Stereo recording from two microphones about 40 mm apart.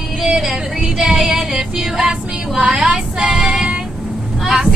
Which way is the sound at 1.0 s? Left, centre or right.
Centre.